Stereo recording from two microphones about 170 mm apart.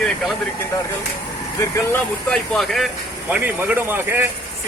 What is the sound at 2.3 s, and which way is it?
Speech, centre (ahead or behind).